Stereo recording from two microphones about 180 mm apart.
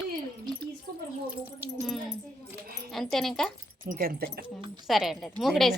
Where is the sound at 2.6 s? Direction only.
55° right (ahead or behind).